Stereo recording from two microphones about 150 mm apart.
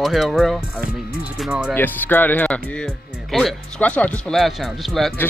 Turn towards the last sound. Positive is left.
turn(degrees=0)  # may be behind; listen again after turning